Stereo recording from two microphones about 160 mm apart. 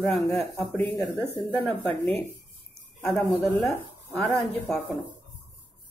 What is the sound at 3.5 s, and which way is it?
Speech, 5° left (ahead or behind).